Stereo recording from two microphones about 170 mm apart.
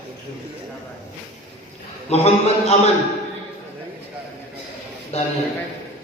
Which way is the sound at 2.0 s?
40° left (ahead or behind).